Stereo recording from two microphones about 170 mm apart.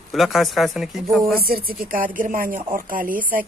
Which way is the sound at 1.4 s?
60° right (ahead or behind).